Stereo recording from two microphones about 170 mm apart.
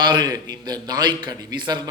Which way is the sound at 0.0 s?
25° right (ahead or behind).